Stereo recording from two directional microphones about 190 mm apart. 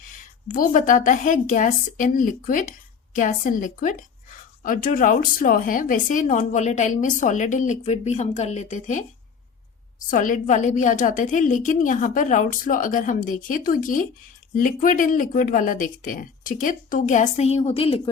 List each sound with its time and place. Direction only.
0.4 s a woman's voice: 45° left (ahead or behind)
10.1 s a woman's voice: 45° left (ahead or behind)